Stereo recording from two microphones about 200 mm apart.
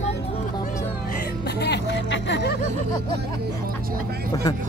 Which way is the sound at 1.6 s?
60° left (ahead or behind).